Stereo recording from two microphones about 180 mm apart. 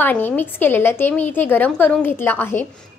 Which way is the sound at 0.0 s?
10° left (ahead or behind).